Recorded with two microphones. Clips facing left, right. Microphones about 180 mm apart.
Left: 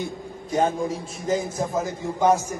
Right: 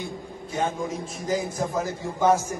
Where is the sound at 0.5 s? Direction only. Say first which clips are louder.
Left 5 dB; 40° left (ahead or behind).